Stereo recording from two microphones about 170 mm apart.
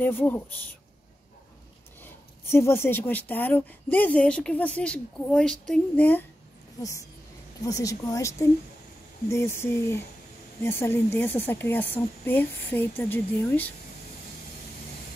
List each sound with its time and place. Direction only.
0.0 s speech: 10° left (ahead or behind)
2.0 s a woman's voice: 15° left (ahead or behind)